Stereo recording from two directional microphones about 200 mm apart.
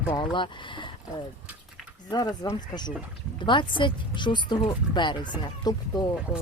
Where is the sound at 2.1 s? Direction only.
20° left (ahead or behind).